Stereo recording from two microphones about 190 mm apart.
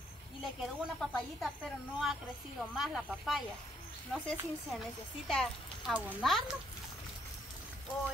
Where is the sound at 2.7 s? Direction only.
Centre (ahead or behind).